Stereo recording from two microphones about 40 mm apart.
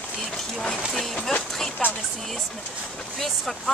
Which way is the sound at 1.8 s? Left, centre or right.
Left.